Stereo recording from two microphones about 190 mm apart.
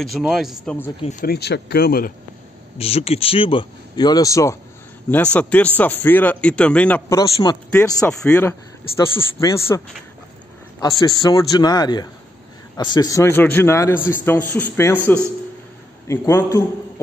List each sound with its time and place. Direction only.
0.2 s a man's voice: 5° right (ahead or behind)
1.2 s speech: 55° left (ahead or behind)
2.8 s a man's voice: 30° left (ahead or behind); by 7.2 s 5° left (ahead or behind)
7.2 s a man's voice: 20° left (ahead or behind)
8.1 s a man's voice: 5° left (ahead or behind); by 9.8 s 20° left (ahead or behind)
11.0 s a man's voice: 20° left (ahead or behind)
16.1 s a man's voice: 15° left (ahead or behind)